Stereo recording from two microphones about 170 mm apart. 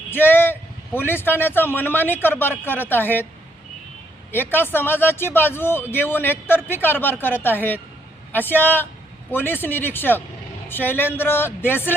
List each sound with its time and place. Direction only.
0.1 s a sound: 10° left (ahead or behind)
0.9 s speech: 10° left (ahead or behind)
4.3 s speech: 10° left (ahead or behind)